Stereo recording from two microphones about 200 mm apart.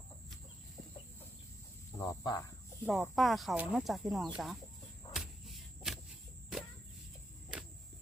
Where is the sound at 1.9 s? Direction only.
15° left (ahead or behind).